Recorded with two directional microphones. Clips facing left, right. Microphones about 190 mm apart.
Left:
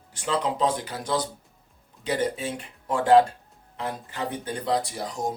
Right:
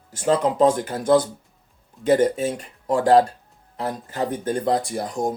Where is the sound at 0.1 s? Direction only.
45° right (ahead or behind).